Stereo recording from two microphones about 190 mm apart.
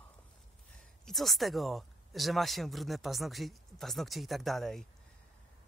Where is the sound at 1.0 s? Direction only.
Centre (ahead or behind).